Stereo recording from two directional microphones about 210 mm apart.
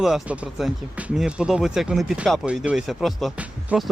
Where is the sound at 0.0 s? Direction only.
Centre (ahead or behind).